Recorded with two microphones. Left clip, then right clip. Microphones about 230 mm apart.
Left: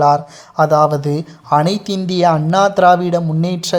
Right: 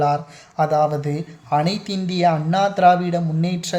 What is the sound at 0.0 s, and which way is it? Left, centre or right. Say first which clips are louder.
Speech: left 7 dB; left.